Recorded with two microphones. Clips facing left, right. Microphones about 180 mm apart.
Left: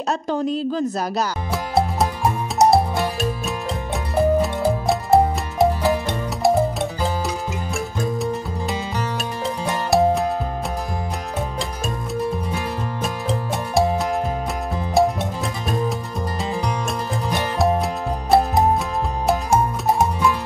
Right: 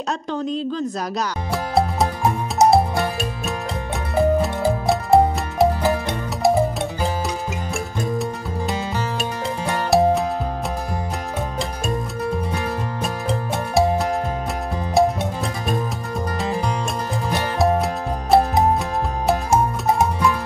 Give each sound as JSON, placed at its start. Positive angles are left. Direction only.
{"t": 0.3, "sound": "music", "side_deg": 5}
{"t": 9.8, "sound": "music", "side_deg": 0}
{"t": 12.5, "sound": "music", "side_deg": 0}
{"t": 19.2, "sound": "music", "side_deg": 0}